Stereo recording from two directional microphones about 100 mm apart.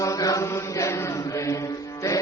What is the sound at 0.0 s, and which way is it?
Mantra, 35° left (ahead or behind).